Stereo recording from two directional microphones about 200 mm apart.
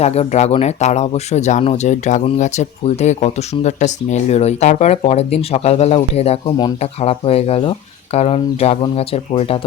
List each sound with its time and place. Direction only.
0.0 s speech: 35° left (ahead or behind)